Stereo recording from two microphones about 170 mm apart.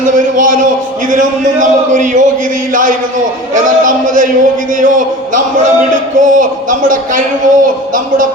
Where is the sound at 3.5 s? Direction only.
50° right (ahead or behind).